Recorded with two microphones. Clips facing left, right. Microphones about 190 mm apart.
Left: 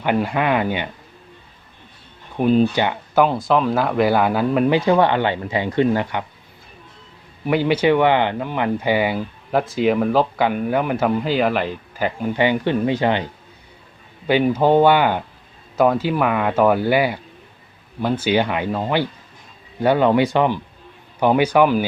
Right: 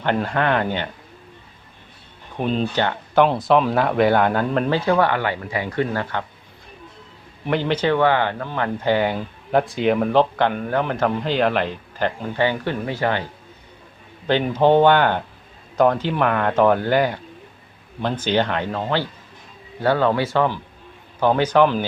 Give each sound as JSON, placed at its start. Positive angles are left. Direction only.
{"t": 0.0, "sound": "speech", "side_deg": 10}
{"t": 2.4, "sound": "speech", "side_deg": 5}
{"t": 3.2, "sound": "speech", "side_deg": 0}
{"t": 4.9, "sound": "speech", "side_deg": 20}
{"t": 7.4, "sound": "speech", "side_deg": 10}
{"t": 14.3, "sound": "speech", "side_deg": 10}